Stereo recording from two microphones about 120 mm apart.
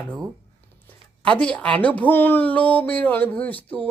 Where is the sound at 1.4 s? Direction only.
10° left (ahead or behind).